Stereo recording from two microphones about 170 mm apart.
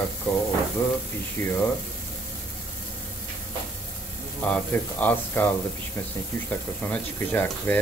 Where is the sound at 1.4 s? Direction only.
15° left (ahead or behind).